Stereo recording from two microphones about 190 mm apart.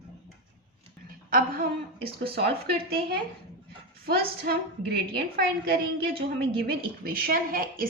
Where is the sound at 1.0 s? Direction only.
50° right (ahead or behind).